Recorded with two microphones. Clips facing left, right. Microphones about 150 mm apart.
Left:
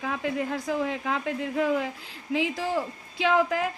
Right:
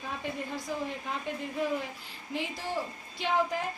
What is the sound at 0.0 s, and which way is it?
A woman's voice, 90° left.